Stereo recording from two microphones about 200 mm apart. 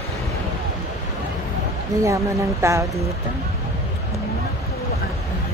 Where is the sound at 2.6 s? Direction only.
15° right (ahead or behind).